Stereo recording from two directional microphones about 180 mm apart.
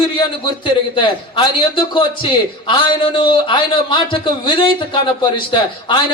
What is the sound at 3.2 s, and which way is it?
A man's voice, 30° left (ahead or behind).